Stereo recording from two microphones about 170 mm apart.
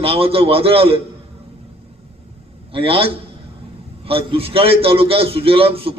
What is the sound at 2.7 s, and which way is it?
A man's voice, 30° right (ahead or behind).